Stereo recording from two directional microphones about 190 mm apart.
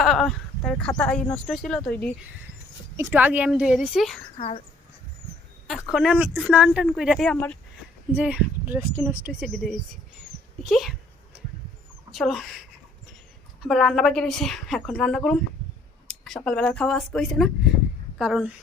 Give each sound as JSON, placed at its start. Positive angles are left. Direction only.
{"t": 0.0, "sound": "speech", "side_deg": 0}
{"t": 2.9, "sound": "speech", "side_deg": -10}
{"t": 4.4, "sound": "speech", "side_deg": 35}
{"t": 5.9, "sound": "speech", "side_deg": 0}
{"t": 8.1, "sound": "a woman's voice", "side_deg": -5}
{"t": 12.1, "sound": "speech", "side_deg": 0}
{"t": 13.6, "sound": "speech", "side_deg": 0}